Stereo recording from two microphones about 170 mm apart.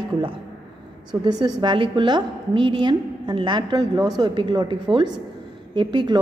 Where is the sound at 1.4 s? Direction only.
25° right (ahead or behind).